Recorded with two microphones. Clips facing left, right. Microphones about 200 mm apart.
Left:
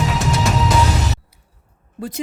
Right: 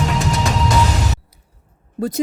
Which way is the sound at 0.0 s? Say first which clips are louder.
Even; centre (ahead or behind).